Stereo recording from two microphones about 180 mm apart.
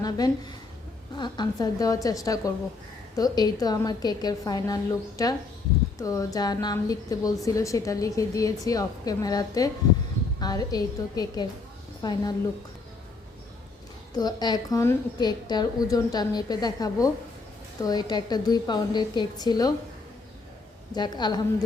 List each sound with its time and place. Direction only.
0.0 s a woman's voice: 20° left (ahead or behind)
14.2 s a woman's voice: 20° left (ahead or behind)
20.9 s a woman's voice: 25° left (ahead or behind)